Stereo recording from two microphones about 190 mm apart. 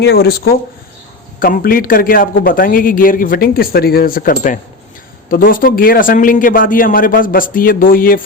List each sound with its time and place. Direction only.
0.0 s a man's voice: 55° left (ahead or behind)